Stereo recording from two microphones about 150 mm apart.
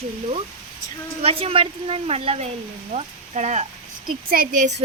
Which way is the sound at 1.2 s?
40° right (ahead or behind).